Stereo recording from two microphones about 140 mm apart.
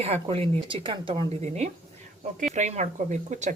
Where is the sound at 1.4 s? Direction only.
50° right (ahead or behind).